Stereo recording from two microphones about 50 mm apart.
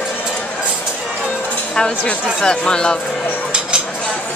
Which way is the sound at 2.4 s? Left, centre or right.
Centre.